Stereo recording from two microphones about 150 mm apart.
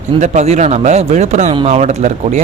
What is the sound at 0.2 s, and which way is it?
A man's voice, 50° right (ahead or behind).